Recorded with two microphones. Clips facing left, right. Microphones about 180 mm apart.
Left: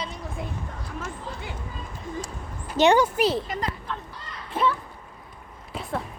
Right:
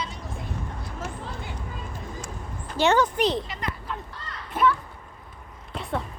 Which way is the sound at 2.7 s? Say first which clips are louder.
Left 3 dB; 15° left (ahead or behind).